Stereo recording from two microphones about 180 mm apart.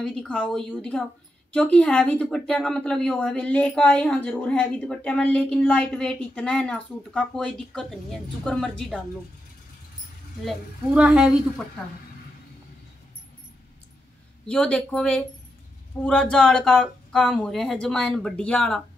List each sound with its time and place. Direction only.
0.0 s a woman's voice: 5° left (ahead or behind)
10.4 s a woman's voice: 5° right (ahead or behind)
14.5 s a woman's voice: 5° left (ahead or behind)